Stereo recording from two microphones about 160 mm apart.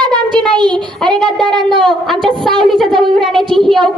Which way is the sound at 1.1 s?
30° right (ahead or behind).